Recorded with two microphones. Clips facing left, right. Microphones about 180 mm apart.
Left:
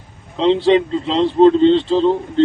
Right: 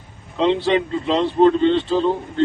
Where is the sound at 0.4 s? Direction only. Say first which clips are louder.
Left 4 dB; 25° left (ahead or behind).